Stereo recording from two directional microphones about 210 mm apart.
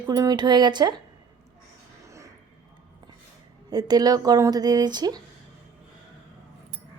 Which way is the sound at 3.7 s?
20° right (ahead or behind).